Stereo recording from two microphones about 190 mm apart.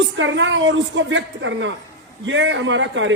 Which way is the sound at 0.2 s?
80° right.